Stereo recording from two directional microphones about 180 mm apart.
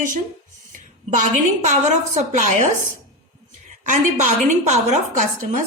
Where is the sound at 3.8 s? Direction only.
45° right (ahead or behind).